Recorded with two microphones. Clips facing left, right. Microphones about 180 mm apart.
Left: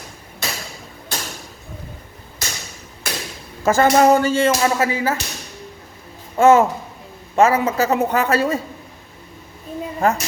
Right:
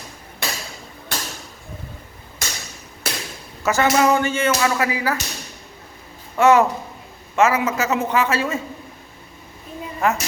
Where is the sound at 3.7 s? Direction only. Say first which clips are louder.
Left 4 dB; 45° left (ahead or behind); by 5.1 s 25° left (ahead or behind).